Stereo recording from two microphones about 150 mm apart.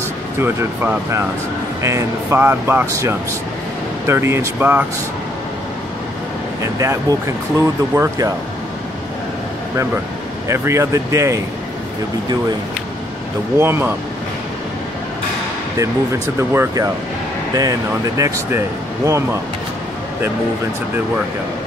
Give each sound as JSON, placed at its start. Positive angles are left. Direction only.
{"t": 0.4, "sound": "speech", "side_deg": -15}
{"t": 6.6, "sound": "speech", "side_deg": -20}
{"t": 10.5, "sound": "speech", "side_deg": -20}
{"t": 13.6, "sound": "speech", "side_deg": -15}
{"t": 15.8, "sound": "speech", "side_deg": -20}